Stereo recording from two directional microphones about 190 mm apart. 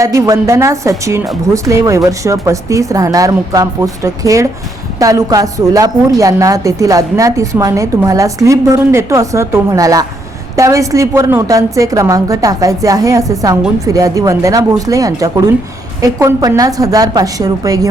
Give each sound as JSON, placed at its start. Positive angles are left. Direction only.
{"t": 0.0, "sound": "a woman's voice", "side_deg": -15}